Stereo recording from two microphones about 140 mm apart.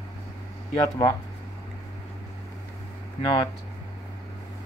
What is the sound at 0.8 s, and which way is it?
Speech, 25° left (ahead or behind).